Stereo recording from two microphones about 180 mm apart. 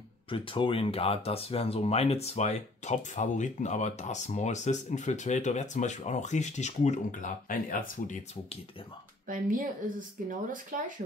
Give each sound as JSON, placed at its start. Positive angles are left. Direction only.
{"t": 0.3, "sound": "speech", "side_deg": 30}
{"t": 9.3, "sound": "a woman's voice", "side_deg": -50}